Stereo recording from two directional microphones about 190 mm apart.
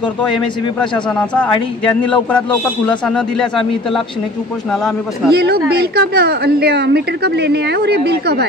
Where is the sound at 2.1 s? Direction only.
5° left (ahead or behind).